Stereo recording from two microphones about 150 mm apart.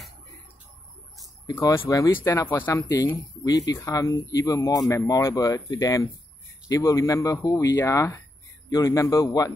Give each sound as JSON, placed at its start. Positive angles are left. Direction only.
{"t": 1.5, "sound": "speech", "side_deg": 20}